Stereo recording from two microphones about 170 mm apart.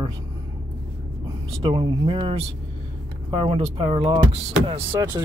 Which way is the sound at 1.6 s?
30° right (ahead or behind).